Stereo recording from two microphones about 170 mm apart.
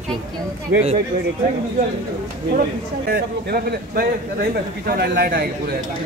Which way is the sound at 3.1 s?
65° right (ahead or behind).